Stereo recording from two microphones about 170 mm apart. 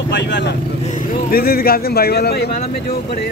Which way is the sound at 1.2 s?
60° left (ahead or behind).